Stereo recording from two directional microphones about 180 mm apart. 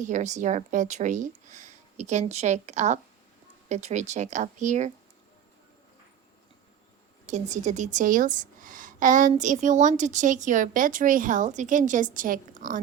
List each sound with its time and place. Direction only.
0.0 s a woman's voice: 40° right (ahead or behind)
7.3 s a woman's voice: 40° right (ahead or behind)